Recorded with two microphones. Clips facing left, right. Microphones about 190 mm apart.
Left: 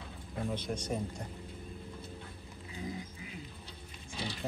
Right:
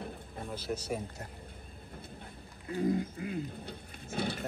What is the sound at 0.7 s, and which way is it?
Speech, 5° right (ahead or behind).